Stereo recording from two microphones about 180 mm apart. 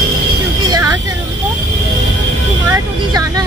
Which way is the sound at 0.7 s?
15° right (ahead or behind).